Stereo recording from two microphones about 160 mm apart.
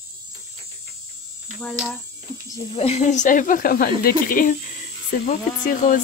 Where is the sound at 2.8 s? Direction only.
40° left (ahead or behind).